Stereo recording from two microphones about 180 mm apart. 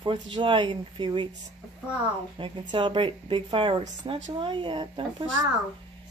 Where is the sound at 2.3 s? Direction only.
25° right (ahead or behind).